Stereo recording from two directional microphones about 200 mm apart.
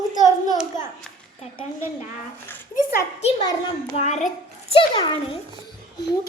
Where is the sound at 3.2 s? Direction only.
25° left (ahead or behind).